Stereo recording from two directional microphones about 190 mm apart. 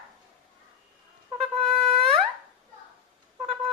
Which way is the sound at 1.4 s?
Centre (ahead or behind).